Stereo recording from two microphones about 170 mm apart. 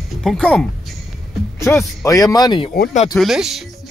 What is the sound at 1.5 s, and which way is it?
Speech, 15° left (ahead or behind).